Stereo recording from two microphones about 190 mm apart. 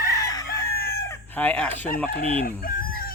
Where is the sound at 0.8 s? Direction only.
55° left (ahead or behind).